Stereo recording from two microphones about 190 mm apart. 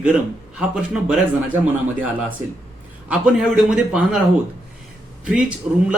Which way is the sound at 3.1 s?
5° right (ahead or behind).